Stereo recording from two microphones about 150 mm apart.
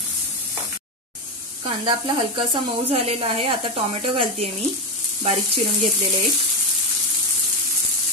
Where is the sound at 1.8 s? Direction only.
35° right (ahead or behind).